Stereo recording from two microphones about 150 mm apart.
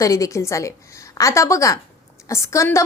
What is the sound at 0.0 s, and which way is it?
A woman's voice, 20° left (ahead or behind).